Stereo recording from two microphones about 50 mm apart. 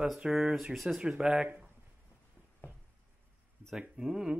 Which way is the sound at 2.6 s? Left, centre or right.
Left.